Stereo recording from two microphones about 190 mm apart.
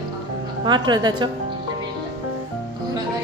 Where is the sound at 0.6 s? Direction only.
25° right (ahead or behind).